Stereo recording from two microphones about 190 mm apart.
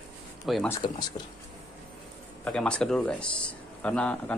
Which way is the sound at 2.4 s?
5° left (ahead or behind).